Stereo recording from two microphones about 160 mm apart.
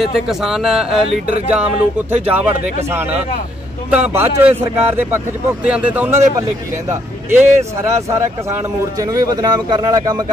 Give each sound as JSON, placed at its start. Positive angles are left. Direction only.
{"t": 0.0, "sound": "a man's voice", "side_deg": 0}